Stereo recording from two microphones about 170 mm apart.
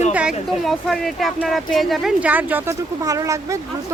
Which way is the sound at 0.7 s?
Centre (ahead or behind).